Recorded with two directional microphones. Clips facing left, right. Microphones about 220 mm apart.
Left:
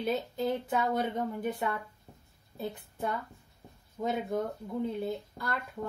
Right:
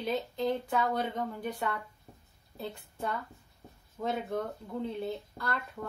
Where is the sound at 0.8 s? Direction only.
25° left (ahead or behind).